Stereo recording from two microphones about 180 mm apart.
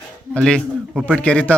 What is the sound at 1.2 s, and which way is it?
Speech, 10° left (ahead or behind).